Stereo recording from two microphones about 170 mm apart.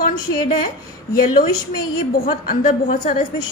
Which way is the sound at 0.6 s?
55° left (ahead or behind).